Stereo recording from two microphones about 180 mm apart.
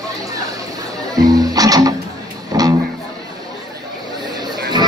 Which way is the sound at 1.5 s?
20° right (ahead or behind).